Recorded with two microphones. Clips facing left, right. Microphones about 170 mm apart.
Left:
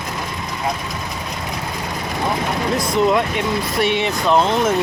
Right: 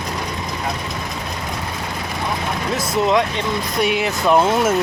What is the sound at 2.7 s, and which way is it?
Speech, centre (ahead or behind).